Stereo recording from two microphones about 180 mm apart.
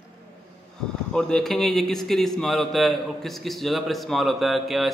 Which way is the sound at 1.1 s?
5° left (ahead or behind).